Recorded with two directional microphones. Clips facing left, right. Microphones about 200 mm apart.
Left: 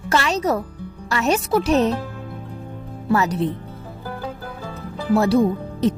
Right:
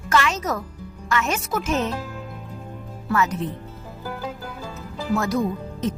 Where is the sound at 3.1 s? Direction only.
35° left (ahead or behind).